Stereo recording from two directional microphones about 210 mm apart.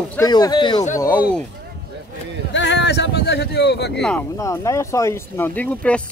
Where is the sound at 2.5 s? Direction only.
60° left (ahead or behind).